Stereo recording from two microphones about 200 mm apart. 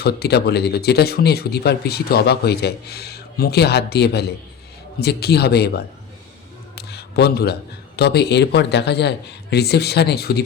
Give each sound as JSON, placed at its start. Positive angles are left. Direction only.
{"t": 0.0, "sound": "speech", "side_deg": 55}
{"t": 6.7, "sound": "a sound", "side_deg": 55}
{"t": 7.9, "sound": "a man's voice", "side_deg": 55}